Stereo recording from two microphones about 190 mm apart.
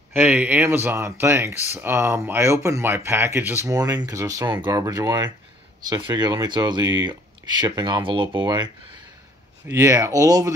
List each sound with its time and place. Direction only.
0.1 s speech: 10° right (ahead or behind)
9.7 s speech: 15° right (ahead or behind)